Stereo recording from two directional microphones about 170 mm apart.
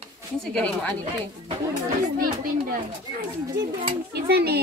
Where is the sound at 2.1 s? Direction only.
55° right (ahead or behind).